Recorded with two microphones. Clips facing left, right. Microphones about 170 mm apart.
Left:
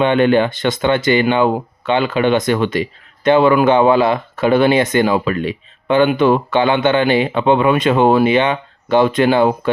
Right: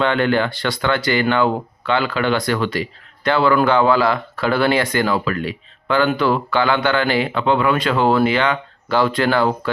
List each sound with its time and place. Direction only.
0.0 s speech: 20° left (ahead or behind)